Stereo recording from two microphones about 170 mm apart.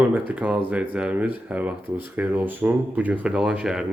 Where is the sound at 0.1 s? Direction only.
10° right (ahead or behind).